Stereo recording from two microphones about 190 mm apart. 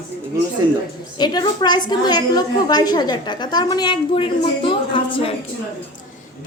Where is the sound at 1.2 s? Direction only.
20° left (ahead or behind).